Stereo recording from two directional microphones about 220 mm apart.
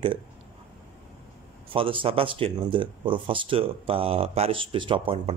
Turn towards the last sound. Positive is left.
turn(degrees=-25)  # may be behind; listen again after turning